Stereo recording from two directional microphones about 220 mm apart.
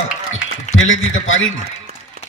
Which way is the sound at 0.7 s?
60° left (ahead or behind).